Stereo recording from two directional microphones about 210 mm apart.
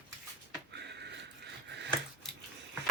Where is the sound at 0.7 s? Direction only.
55° right (ahead or behind).